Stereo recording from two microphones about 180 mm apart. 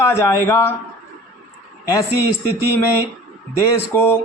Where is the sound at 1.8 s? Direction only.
20° left (ahead or behind).